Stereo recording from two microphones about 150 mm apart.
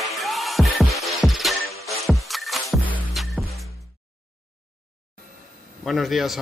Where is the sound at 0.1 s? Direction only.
Centre (ahead or behind).